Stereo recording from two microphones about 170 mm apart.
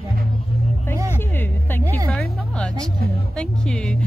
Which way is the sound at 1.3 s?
10° left (ahead or behind).